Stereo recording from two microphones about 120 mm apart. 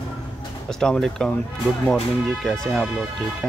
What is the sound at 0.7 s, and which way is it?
Speech, 5° left (ahead or behind).